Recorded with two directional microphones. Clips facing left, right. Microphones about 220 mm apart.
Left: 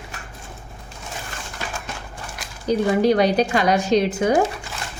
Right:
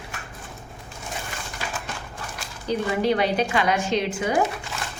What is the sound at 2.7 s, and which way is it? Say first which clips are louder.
A woman's voice: left 5 dB; 40° left (ahead or behind).